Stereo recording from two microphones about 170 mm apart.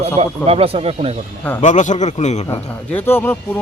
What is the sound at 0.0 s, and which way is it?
A man's voice, 35° right (ahead or behind).